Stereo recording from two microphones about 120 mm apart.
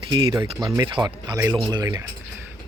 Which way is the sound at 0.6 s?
35° right (ahead or behind).